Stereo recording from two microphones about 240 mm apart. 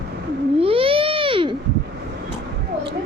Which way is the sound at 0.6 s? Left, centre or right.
Right.